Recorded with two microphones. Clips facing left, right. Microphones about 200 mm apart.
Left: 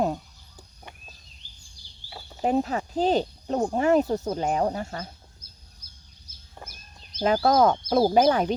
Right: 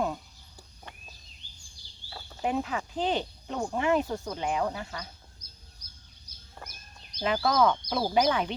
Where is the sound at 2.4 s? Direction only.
40° left (ahead or behind).